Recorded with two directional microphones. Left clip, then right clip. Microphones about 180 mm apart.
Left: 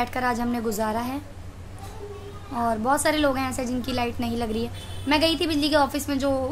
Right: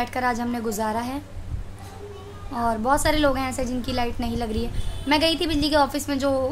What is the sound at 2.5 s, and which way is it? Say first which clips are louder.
A woman's voice: right 1 dB; 5° right (ahead or behind).